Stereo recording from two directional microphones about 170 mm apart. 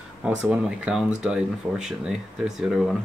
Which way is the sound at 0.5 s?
5° right (ahead or behind).